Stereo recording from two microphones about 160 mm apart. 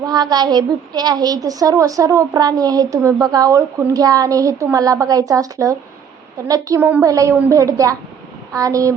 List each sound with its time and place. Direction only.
0.0 s a woman's voice: 25° right (ahead or behind)